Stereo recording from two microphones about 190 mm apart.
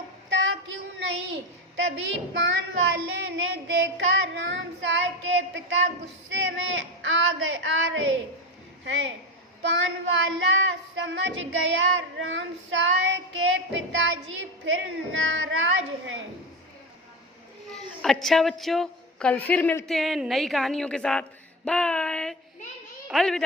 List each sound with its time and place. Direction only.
0.3 s child singing: 70° right (ahead or behind)
6.3 s child singing: 75° right (ahead or behind)
8.8 s a woman's voice: 75° right (ahead or behind)
9.6 s child singing: 70° right (ahead or behind)
17.7 s a woman's voice: centre (ahead or behind)